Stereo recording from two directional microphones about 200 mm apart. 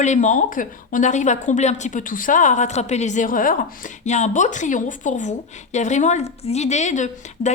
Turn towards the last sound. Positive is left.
turn(degrees=35)  # may be behind; listen again after turning